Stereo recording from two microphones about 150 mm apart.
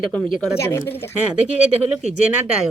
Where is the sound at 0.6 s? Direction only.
15° left (ahead or behind).